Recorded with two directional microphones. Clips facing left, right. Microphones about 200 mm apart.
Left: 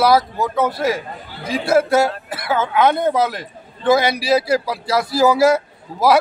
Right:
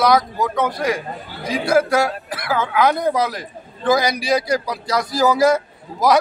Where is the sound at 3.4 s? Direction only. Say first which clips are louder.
Even; 5° left (ahead or behind).